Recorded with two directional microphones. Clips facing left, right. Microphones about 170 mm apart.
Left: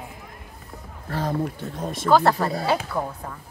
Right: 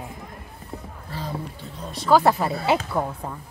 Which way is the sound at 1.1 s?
55° left (ahead or behind).